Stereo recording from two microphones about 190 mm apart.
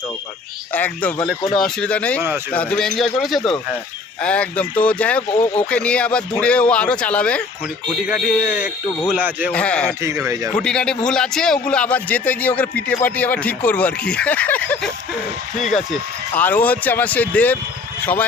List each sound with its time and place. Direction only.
0.7 s a man's voice: 10° left (ahead or behind); by 9.5 s 10° right (ahead or behind)
9.5 s a man's voice: 5° left (ahead or behind)
10.0 s speech: 15° right (ahead or behind)
10.5 s a man's voice: 5° left (ahead or behind)